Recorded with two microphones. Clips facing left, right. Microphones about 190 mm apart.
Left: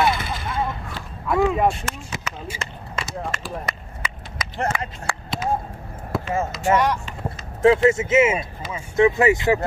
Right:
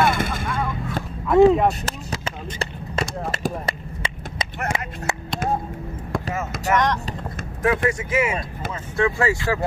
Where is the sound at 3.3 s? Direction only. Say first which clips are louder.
Right 4 dB; 30° right (ahead or behind).